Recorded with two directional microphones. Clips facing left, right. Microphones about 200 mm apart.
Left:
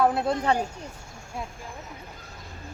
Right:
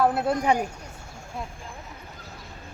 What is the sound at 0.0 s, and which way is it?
Speech, centre (ahead or behind).